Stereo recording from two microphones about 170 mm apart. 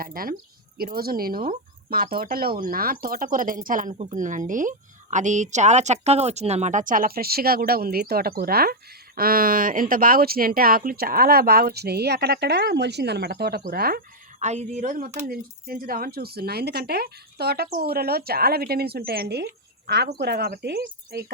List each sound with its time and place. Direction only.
0.0 s speech: 60° right (ahead or behind)
3.9 s speech: 40° right (ahead or behind); by 14.0 s 60° right (ahead or behind)
14.3 s speech: 45° right (ahead or behind); by 21.2 s 65° right (ahead or behind)